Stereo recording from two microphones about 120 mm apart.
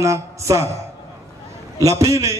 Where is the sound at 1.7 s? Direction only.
25° right (ahead or behind).